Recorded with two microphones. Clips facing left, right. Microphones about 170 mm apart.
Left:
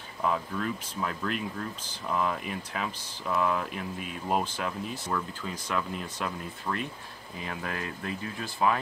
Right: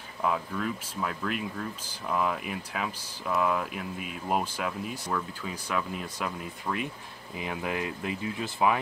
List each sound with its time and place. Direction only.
0.2 s speech: 5° right (ahead or behind)